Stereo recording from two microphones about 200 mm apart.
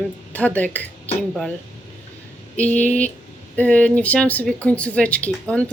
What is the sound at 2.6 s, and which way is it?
Speech, 5° left (ahead or behind).